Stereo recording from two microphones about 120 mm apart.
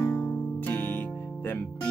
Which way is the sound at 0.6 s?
15° left (ahead or behind).